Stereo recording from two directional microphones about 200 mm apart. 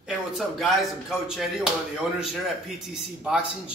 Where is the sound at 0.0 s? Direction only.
Centre (ahead or behind).